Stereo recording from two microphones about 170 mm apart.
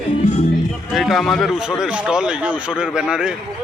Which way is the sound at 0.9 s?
Centre (ahead or behind).